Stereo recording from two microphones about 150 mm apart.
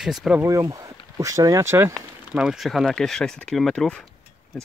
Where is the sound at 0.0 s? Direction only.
Centre (ahead or behind).